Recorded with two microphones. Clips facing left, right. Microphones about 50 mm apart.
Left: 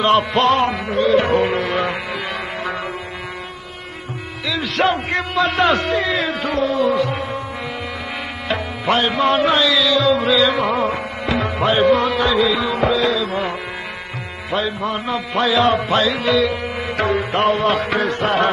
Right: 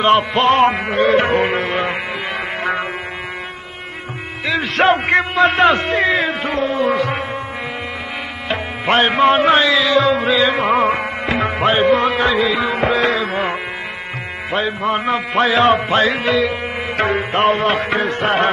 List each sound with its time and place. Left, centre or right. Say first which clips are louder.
0.4 s music: right 3 dB; right
4.5 s music: right 4 dB; right
5.7 s speech: right 3 dB; right
6.9 s music: right 1 dB; right
8.5 s music: right 1 dB; right
17.8 s speech: right 1 dB; right
18.2 s music: right 1 dB; right